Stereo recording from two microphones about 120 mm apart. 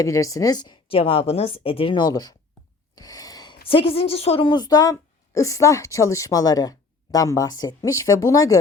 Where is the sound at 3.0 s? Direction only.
30° left (ahead or behind).